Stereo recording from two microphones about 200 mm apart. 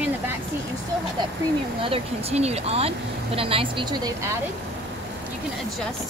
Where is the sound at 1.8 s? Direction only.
30° right (ahead or behind).